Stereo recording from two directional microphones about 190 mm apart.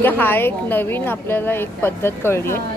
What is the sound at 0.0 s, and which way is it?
Speech, 10° left (ahead or behind).